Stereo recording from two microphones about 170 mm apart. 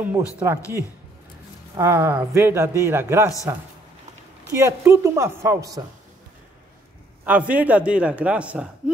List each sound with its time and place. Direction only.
0.4 s a man's voice: 10° right (ahead or behind)
4.5 s a man's voice: 15° right (ahead or behind)
7.2 s a man's voice: 10° right (ahead or behind)